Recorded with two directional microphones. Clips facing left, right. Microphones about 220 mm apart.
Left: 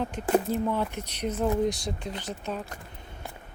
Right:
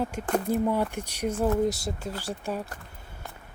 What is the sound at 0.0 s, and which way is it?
Speech, 5° right (ahead or behind).